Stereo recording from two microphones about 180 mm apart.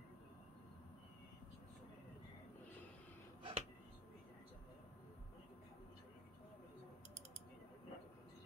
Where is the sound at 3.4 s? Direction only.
35° right (ahead or behind).